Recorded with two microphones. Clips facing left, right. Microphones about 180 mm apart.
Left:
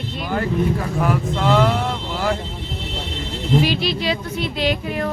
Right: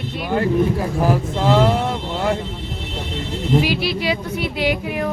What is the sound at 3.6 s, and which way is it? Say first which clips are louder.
Speech: left 1 dB; 10° right (ahead or behind).